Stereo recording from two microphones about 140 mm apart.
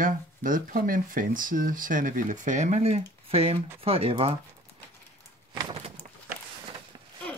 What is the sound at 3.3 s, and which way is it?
Speech, 45° right (ahead or behind).